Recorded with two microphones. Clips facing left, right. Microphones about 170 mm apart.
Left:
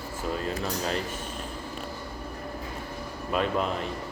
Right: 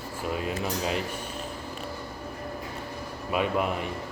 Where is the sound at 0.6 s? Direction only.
10° right (ahead or behind).